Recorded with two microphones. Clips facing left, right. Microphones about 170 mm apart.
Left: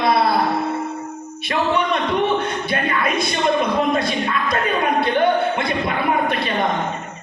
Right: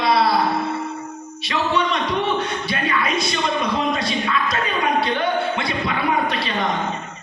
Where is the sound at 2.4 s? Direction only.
55° left (ahead or behind).